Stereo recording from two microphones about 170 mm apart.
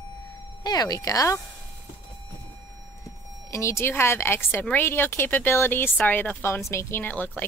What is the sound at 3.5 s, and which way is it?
A woman's voice, 15° left (ahead or behind).